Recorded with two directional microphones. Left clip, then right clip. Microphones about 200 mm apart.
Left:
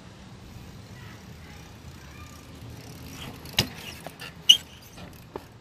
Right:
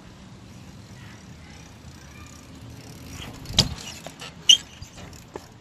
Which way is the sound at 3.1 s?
Centre (ahead or behind).